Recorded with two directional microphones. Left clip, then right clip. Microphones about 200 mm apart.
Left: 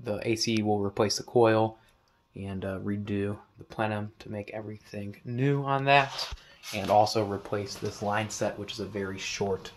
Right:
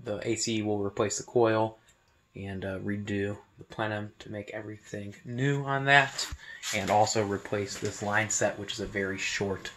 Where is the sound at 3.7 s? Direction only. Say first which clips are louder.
Left 2 dB; 20° left (ahead or behind).